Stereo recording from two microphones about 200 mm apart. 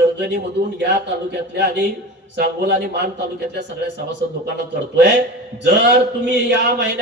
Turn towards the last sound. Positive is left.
turn(degrees=-55)  # may be behind; listen again after turning